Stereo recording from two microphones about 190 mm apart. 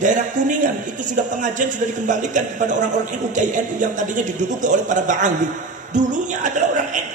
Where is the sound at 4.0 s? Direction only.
40° right (ahead or behind).